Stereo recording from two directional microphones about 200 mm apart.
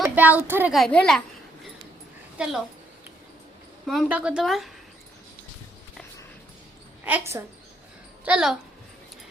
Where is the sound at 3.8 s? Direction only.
5° right (ahead or behind).